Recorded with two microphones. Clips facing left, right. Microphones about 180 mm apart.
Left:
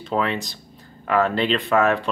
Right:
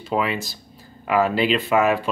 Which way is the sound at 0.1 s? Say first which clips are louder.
Even; 5° right (ahead or behind).